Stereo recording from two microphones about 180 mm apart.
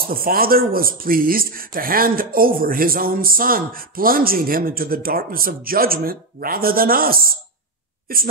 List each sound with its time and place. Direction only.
0.0 s speech: 55° right (ahead or behind)